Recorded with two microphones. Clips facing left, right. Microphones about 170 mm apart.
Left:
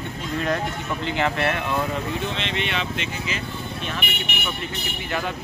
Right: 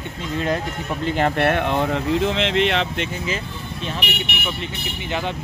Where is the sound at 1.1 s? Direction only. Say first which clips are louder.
Right 5 dB; 45° right (ahead or behind); by 3.1 s 65° right (ahead or behind).